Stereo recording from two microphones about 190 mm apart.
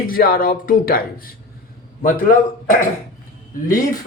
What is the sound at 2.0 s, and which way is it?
Speech, 45° left (ahead or behind).